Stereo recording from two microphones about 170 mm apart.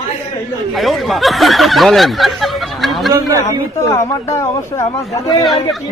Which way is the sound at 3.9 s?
15° left (ahead or behind).